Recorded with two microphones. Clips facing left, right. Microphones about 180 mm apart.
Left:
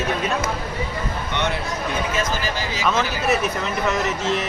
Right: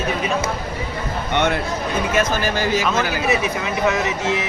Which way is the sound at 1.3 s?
55° right (ahead or behind).